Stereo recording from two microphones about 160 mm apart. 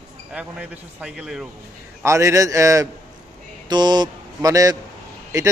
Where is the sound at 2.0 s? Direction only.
20° right (ahead or behind).